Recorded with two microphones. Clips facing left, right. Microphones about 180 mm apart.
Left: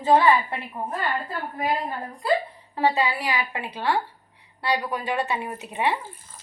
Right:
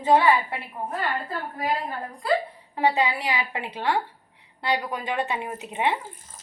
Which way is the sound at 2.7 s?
20° right (ahead or behind).